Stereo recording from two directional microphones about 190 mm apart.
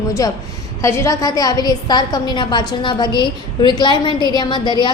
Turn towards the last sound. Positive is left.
turn(degrees=25)  # may be behind; listen again after turning